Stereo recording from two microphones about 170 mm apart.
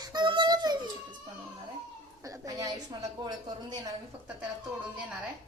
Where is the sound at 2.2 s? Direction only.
20° right (ahead or behind).